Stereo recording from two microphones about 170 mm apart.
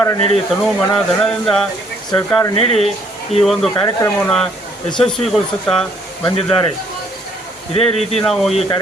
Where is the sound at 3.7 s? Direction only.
20° left (ahead or behind).